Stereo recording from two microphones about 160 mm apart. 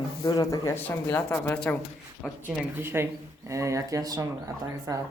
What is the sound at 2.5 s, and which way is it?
Speech, 15° right (ahead or behind).